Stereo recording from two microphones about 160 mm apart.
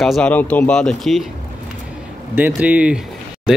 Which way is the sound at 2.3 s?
10° right (ahead or behind).